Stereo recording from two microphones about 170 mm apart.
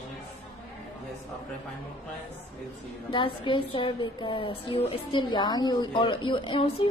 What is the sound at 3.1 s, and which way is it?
A woman's voice, 30° left (ahead or behind).